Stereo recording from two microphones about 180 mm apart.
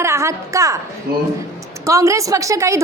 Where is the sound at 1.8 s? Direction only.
15° right (ahead or behind).